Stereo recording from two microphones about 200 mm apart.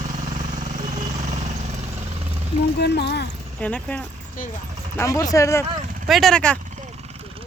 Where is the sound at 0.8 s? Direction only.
35° right (ahead or behind).